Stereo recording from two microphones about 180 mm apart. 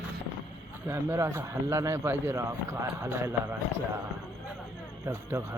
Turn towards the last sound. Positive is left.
turn(degrees=-15)  # may be behind; listen again after turning